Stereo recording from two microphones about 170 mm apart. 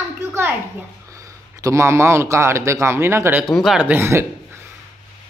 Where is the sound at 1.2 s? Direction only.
20° right (ahead or behind).